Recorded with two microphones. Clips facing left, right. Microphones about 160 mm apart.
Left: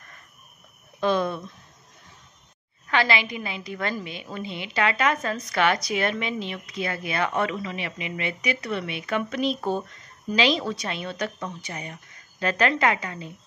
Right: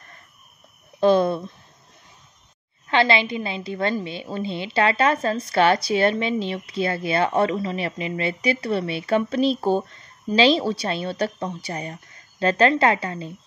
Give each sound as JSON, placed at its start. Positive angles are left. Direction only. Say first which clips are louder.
{"t": 1.0, "sound": "a woman's voice", "louder": "right 6 dB", "side_deg": -35}
{"t": 2.9, "sound": "a woman's voice", "louder": "right 4 dB", "side_deg": -30}